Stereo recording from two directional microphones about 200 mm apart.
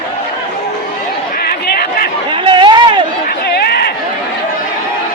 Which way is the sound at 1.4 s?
50° left (ahead or behind).